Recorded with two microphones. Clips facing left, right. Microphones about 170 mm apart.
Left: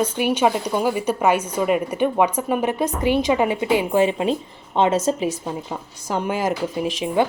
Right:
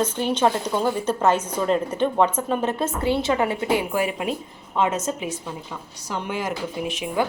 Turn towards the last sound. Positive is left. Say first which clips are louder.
# left 4 dB
turn(degrees=35)  # may be behind; listen again after turning